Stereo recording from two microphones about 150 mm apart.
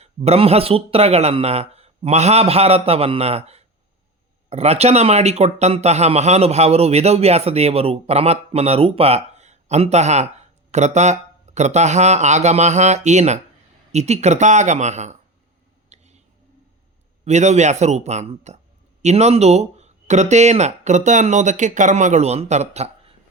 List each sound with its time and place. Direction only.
0.0 s a man's voice: 45° right (ahead or behind)
15.9 s whispering: 50° right (ahead or behind)
17.2 s speech: 50° right (ahead or behind)